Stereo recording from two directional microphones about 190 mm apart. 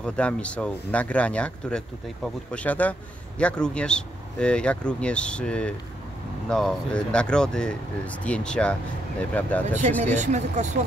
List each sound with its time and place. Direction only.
0.0 s a man's voice: 5° left (ahead or behind)
10.1 s speech: 40° right (ahead or behind)